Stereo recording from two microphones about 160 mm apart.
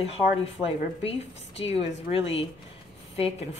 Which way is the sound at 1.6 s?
40° left (ahead or behind).